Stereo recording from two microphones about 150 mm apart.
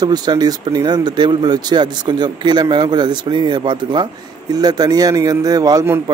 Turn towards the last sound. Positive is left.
turn(degrees=-20)  # may be behind; listen again after turning